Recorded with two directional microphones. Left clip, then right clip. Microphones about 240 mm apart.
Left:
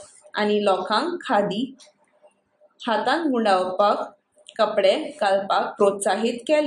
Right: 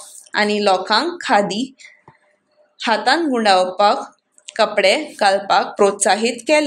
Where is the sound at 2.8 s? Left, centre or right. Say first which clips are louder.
Right 6 dB; right.